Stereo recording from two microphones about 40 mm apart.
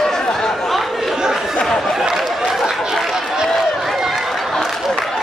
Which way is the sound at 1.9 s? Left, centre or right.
Centre.